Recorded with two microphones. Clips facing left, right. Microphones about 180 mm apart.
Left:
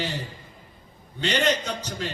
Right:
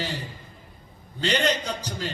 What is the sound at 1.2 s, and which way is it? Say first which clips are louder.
Speech: even; 35° right (ahead or behind).